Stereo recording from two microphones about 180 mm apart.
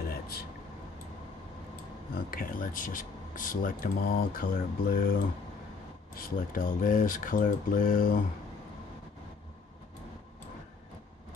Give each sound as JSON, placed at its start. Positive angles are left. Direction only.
{"t": 0.1, "sound": "a sound", "side_deg": 60}
{"t": 2.1, "sound": "speech", "side_deg": 50}
{"t": 6.1, "sound": "speech", "side_deg": 50}